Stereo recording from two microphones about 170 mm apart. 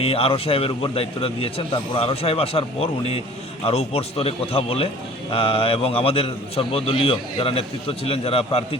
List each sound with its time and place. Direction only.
0.0 s a man's voice: 35° left (ahead or behind)